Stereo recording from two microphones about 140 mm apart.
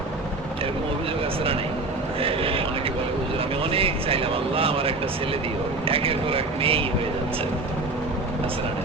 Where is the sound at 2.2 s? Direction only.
40° right (ahead or behind).